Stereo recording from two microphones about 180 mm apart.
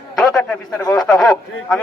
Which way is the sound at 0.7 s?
20° left (ahead or behind).